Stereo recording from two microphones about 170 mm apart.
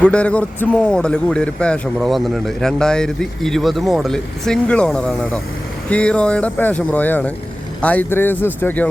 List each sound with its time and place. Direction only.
0.0 s a man's voice: 5° left (ahead or behind)